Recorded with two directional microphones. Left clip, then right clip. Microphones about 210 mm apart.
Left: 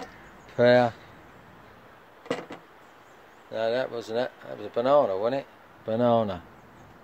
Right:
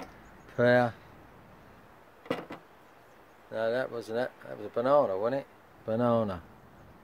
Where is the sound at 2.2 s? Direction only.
15° right (ahead or behind).